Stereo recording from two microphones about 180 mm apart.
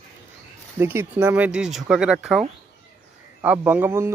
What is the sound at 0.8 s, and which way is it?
Speech, 10° right (ahead or behind).